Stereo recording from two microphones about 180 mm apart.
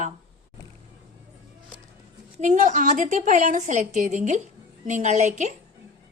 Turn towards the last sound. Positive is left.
turn(degrees=-40)  # may be behind; listen again after turning